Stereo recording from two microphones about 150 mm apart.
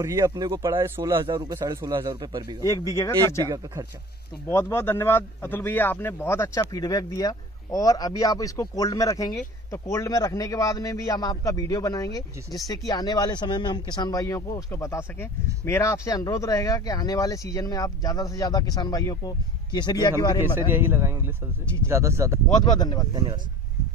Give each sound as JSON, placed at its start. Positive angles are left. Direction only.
{"t": 0.0, "sound": "a man's voice", "side_deg": -20}
{"t": 1.2, "sound": "a man's voice", "side_deg": -25}
{"t": 2.9, "sound": "speech", "side_deg": 20}
{"t": 3.4, "sound": "a man's voice", "side_deg": -25}
{"t": 4.5, "sound": "speech", "side_deg": 15}
{"t": 20.5, "sound": "a man's voice", "side_deg": -15}
{"t": 22.6, "sound": "speech", "side_deg": 30}
{"t": 23.1, "sound": "a man's voice", "side_deg": -30}